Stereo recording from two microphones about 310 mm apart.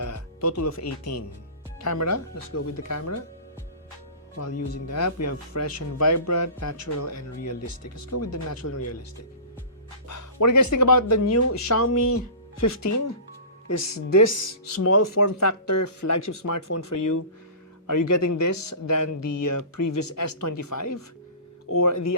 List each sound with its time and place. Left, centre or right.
0.0 s speech: left
4.4 s speech: left
8.1 s speech: left
10.1 s speech: left
13.9 s speech: left
14.8 s speech: left
15.0 s speech: left
21.8 s speech: left